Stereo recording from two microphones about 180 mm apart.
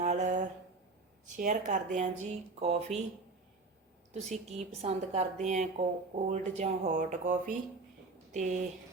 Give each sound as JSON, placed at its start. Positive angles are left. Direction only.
{"t": 0.0, "sound": "a sound", "side_deg": -40}
{"t": 1.4, "sound": "a woman's voice", "side_deg": -45}
{"t": 4.1, "sound": "a woman's voice", "side_deg": -40}